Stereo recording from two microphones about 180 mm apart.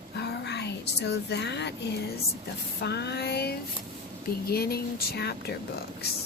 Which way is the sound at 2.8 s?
65° left (ahead or behind).